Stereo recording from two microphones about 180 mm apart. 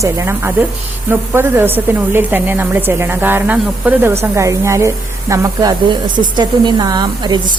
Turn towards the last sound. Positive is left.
turn(degrees=-25)  # may be behind; listen again after turning